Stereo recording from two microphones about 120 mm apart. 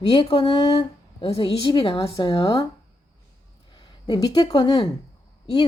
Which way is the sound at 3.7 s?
35° left (ahead or behind).